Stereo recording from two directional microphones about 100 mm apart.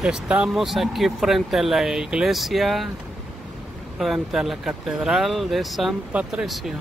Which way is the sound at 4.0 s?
5° right (ahead or behind).